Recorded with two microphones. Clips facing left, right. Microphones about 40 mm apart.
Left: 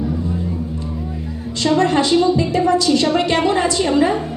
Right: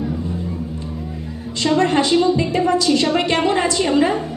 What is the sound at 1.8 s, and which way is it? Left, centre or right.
A woman's voice, right.